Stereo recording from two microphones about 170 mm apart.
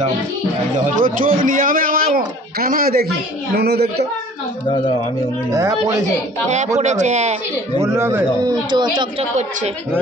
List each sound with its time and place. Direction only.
0.9 s a man's voice: 55° right (ahead or behind)
3.5 s a woman's voice: 75° right (ahead or behind)
5.5 s a woman's voice: 20° right (ahead or behind)
6.8 s speech: 45° right (ahead or behind)
7.8 s speech: 15° right (ahead or behind)
8.6 s a woman's voice: 25° right (ahead or behind)